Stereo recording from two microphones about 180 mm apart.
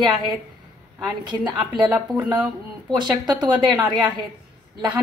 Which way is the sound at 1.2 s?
25° right (ahead or behind).